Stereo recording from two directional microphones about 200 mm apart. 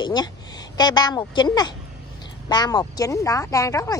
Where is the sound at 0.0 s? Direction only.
20° left (ahead or behind).